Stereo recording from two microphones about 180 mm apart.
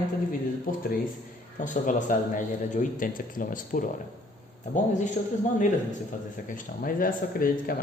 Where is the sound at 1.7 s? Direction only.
45° left (ahead or behind).